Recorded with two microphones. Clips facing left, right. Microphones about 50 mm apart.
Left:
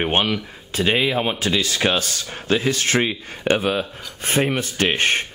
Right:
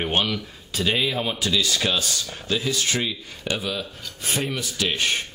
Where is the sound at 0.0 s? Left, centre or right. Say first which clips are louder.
Left 4 dB; left.